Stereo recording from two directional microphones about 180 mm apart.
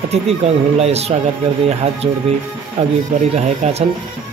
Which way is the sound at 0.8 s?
35° right (ahead or behind).